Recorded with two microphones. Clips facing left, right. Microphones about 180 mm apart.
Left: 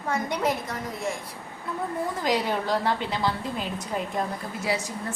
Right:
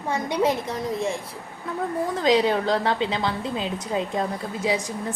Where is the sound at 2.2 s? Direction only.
20° right (ahead or behind).